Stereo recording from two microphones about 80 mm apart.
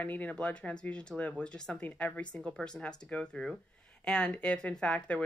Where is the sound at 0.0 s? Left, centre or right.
Left.